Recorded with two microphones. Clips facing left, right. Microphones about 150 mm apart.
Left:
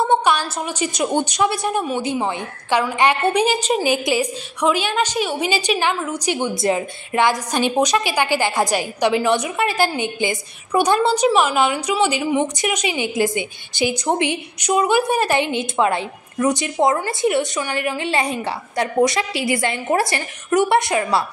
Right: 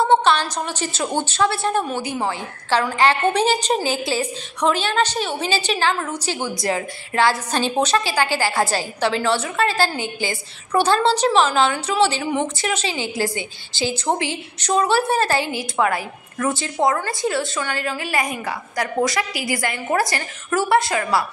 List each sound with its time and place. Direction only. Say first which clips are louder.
0.1 s a woman's voice: right 1 dB; 10° left (ahead or behind)
2.0 s a woman's voice: left 2 dB; 20° left (ahead or behind)
6.3 s a woman's voice: left 4 dB; 20° left (ahead or behind)